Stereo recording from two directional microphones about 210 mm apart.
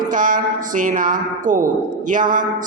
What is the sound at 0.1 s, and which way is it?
A man's voice, 40° right (ahead or behind).